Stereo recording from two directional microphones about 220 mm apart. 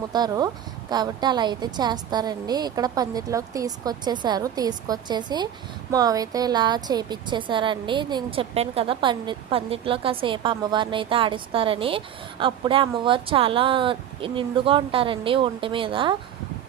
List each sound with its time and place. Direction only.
0.1 s a woman's voice: 20° right (ahead or behind)